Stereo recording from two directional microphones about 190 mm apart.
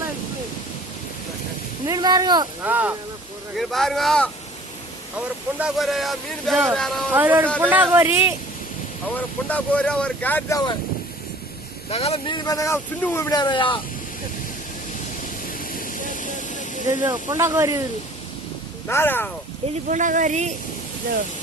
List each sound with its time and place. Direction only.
1.9 s speech: 20° right (ahead or behind)
2.6 s speech: 10° right (ahead or behind)
3.6 s speech: centre (ahead or behind)
7.1 s speech: 10° right (ahead or behind)
9.1 s speech: 10° left (ahead or behind)
11.9 s speech: 30° left (ahead or behind)
15.4 s vehicle: 45° left (ahead or behind)
17.0 s speech: 20° right (ahead or behind)
18.9 s speech: 10° left (ahead or behind)
19.9 s speech: 40° right (ahead or behind)